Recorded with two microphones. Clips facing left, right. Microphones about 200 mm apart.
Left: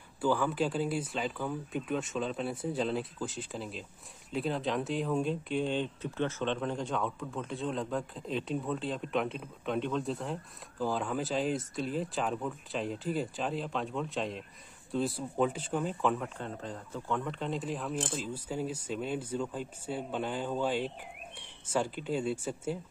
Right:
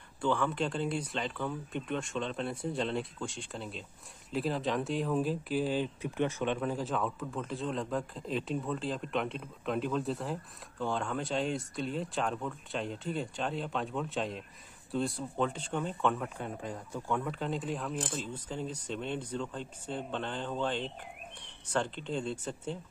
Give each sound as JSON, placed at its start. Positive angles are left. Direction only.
{"t": 0.2, "sound": "speech", "side_deg": 5}
{"t": 16.3, "sound": "speech", "side_deg": -10}